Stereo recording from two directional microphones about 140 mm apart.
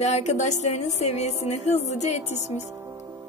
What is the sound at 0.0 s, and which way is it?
Music, 55° left (ahead or behind).